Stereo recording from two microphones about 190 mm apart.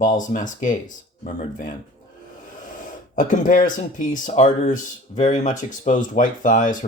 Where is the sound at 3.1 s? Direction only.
40° left (ahead or behind).